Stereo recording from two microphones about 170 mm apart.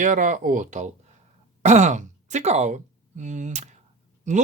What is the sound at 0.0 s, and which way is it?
Speech, 50° right (ahead or behind).